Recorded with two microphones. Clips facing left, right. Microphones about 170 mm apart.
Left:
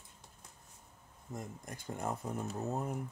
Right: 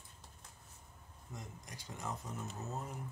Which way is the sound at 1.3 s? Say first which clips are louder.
Left 7 dB; 50° left (ahead or behind).